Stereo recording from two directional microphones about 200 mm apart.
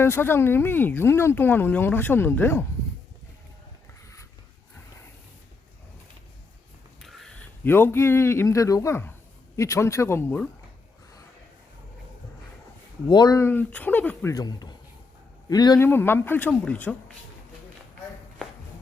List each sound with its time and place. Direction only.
0.0 s speech: 10° left (ahead or behind)
7.0 s a man's voice: centre (ahead or behind)
13.1 s speech: 20° left (ahead or behind)